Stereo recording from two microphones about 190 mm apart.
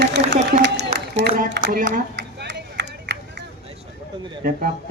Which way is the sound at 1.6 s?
65° right (ahead or behind).